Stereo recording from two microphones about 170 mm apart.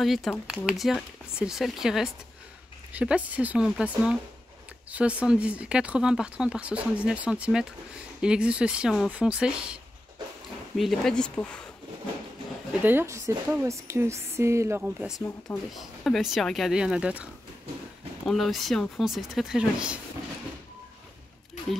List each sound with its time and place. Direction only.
0.0 s speech: centre (ahead or behind)
10.8 s speech: centre (ahead or behind)
12.8 s speech: 15° right (ahead or behind)
15.0 s speech: 5° right (ahead or behind)